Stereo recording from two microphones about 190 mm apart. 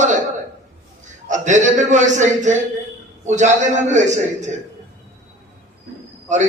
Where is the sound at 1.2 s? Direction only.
40° right (ahead or behind).